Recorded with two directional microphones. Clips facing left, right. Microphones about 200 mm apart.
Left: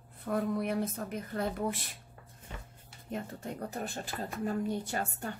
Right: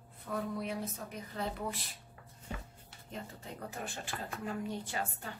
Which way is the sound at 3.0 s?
55° left (ahead or behind).